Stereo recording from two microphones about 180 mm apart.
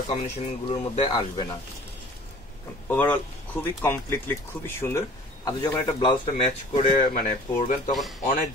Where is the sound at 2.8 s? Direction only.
10° left (ahead or behind); by 6.2 s 25° left (ahead or behind).